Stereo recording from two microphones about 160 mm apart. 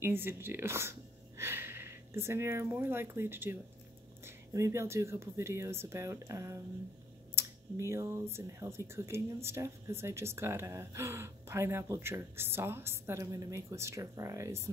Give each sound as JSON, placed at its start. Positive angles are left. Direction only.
{"t": 0.0, "sound": "speech", "side_deg": -15}